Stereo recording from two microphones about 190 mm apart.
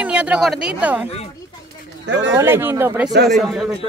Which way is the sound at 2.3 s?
10° right (ahead or behind).